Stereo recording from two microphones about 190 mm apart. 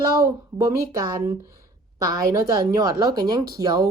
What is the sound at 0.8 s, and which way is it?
Speech, 15° right (ahead or behind).